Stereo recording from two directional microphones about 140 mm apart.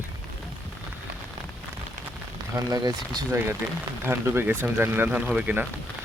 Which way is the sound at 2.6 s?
25° right (ahead or behind).